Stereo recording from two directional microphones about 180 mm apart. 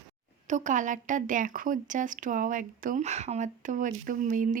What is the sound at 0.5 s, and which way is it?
A woman's voice, 45° right (ahead or behind).